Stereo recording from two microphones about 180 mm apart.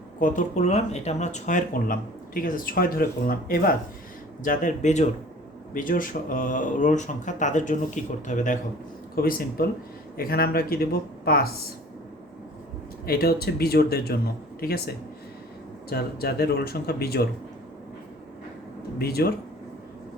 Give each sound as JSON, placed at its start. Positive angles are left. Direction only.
{"t": 0.2, "sound": "speech", "side_deg": 45}
{"t": 9.1, "sound": "speech", "side_deg": 55}
{"t": 13.1, "sound": "speech", "side_deg": 60}
{"t": 15.9, "sound": "speech", "side_deg": 60}
{"t": 18.9, "sound": "speech", "side_deg": 60}